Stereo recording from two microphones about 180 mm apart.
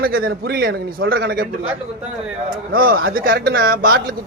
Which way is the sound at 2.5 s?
55° right (ahead or behind).